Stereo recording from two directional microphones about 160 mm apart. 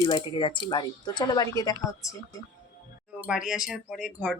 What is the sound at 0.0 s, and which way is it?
Speech, 25° left (ahead or behind).